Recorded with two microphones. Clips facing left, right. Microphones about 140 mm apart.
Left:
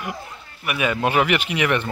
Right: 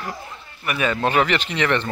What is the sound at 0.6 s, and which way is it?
Speech, 10° left (ahead or behind).